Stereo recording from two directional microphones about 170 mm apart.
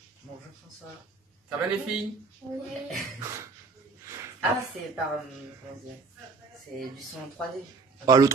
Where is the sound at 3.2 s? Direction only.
15° right (ahead or behind).